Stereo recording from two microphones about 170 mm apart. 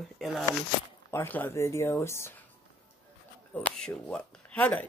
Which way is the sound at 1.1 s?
10° left (ahead or behind).